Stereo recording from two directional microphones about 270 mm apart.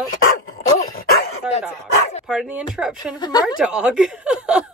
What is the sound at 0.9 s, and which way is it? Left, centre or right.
Dog, left.